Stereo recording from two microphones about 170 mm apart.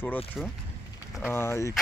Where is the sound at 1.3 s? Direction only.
15° left (ahead or behind).